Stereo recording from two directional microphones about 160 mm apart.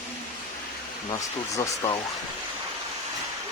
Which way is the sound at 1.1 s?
20° left (ahead or behind).